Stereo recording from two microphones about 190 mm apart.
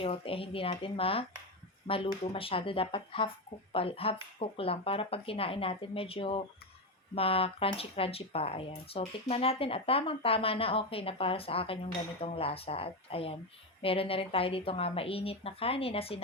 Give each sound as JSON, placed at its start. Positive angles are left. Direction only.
{"t": 0.0, "sound": "speech", "side_deg": 30}